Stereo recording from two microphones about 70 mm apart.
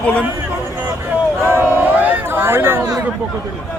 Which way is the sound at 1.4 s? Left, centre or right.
Right.